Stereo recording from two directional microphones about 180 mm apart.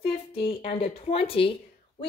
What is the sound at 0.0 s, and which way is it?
A woman's voice, 30° left (ahead or behind).